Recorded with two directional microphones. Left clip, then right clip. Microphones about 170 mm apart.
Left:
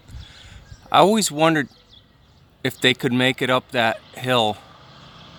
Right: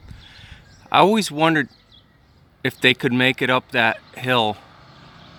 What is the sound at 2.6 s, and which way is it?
Speech, centre (ahead or behind).